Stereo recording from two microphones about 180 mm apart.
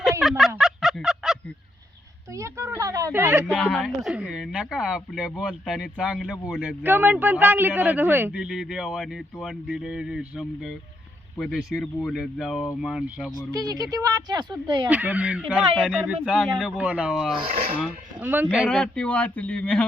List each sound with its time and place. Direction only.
0.0 s a sound: centre (ahead or behind)
2.3 s a sound: 15° right (ahead or behind)
3.5 s speech: 5° left (ahead or behind)
13.3 s speech: 20° right (ahead or behind)
14.8 s speech: 5° right (ahead or behind)
17.4 s speech: 35° right (ahead or behind)
18.2 s speech: 10° right (ahead or behind)
18.7 s speech: 5° left (ahead or behind)